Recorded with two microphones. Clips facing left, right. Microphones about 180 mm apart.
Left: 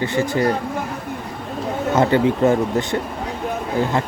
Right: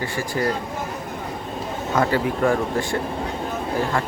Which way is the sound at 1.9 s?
25° left (ahead or behind).